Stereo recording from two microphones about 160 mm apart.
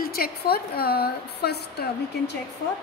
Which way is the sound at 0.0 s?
70° left (ahead or behind).